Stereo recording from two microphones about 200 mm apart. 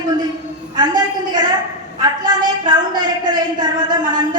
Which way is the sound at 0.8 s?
20° right (ahead or behind).